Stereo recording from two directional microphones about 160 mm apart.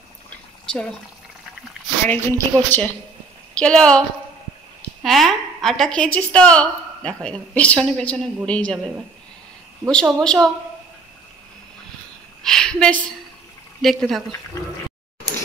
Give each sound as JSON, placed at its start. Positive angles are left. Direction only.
{"t": 2.0, "sound": "a woman's voice", "side_deg": 10}
{"t": 5.0, "sound": "a woman's voice", "side_deg": 0}
{"t": 8.7, "sound": "speech", "side_deg": -5}
{"t": 9.8, "sound": "a woman's voice", "side_deg": 5}
{"t": 12.4, "sound": "a woman's voice", "side_deg": 5}